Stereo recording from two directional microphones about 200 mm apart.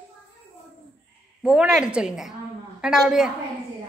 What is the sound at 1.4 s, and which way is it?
A woman's voice, 5° right (ahead or behind).